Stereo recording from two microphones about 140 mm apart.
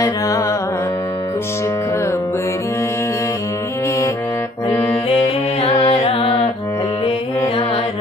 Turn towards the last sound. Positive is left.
turn(degrees=45)  # may be behind; listen again after turning